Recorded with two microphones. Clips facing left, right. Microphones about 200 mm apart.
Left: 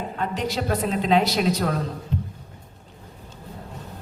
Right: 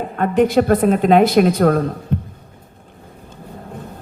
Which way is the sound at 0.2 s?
55° right (ahead or behind).